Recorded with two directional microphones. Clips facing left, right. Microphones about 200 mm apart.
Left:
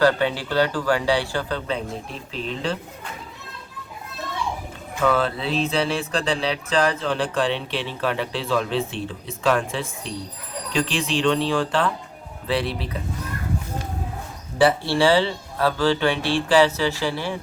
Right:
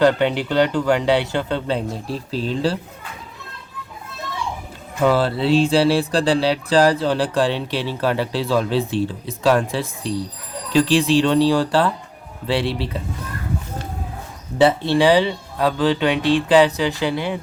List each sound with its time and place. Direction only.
0.0 s speech: 20° right (ahead or behind)
5.0 s a sound: 30° right (ahead or behind)
12.5 s speech: 30° right (ahead or behind)
14.6 s speech: 20° right (ahead or behind)